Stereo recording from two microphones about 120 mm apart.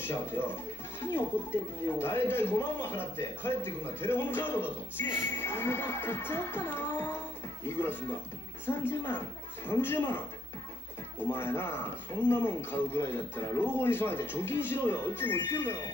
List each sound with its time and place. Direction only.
0.0 s a man's voice: 20° left (ahead or behind)
11.2 s a man's voice: 20° left (ahead or behind)